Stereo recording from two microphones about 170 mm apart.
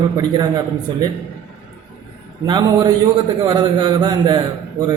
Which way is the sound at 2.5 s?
25° right (ahead or behind).